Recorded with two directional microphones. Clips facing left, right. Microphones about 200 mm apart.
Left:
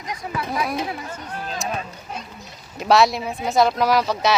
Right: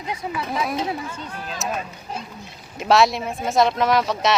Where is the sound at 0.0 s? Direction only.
25° right (ahead or behind).